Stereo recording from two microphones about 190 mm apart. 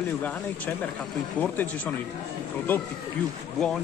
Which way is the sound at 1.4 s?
10° left (ahead or behind).